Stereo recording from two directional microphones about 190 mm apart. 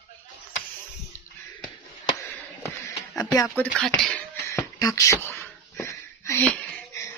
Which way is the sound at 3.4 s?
5° left (ahead or behind).